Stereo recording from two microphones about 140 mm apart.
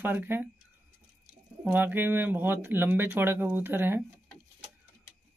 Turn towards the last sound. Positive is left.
turn(degrees=-15)  # may be behind; listen again after turning